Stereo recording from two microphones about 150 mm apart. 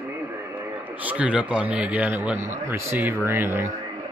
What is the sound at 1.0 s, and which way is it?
A man's voice, 10° right (ahead or behind).